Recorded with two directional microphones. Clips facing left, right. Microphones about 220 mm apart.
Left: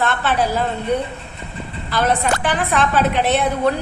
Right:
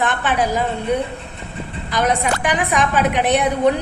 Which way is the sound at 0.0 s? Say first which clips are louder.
Even; 15° right (ahead or behind).